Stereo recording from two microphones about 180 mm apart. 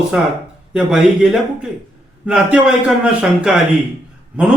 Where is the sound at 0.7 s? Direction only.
5° right (ahead or behind).